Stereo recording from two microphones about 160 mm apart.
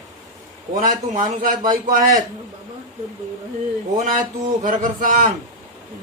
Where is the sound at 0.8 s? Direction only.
55° right (ahead or behind).